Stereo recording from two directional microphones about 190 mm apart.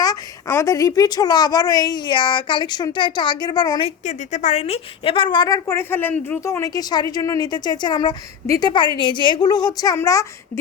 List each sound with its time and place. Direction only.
0.0 s a woman's voice: 20° left (ahead or behind)